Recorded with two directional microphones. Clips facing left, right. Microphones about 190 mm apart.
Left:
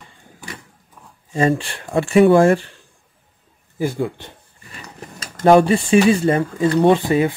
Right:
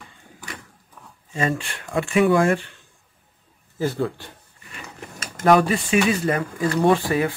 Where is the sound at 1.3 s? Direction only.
35° left (ahead or behind).